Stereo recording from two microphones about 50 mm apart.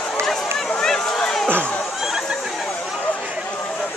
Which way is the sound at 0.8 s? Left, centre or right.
Centre.